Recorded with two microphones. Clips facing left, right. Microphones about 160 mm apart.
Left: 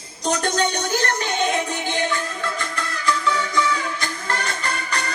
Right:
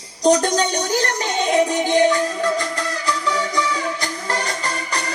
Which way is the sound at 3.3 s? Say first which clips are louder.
Right 1 dB; 35° right (ahead or behind).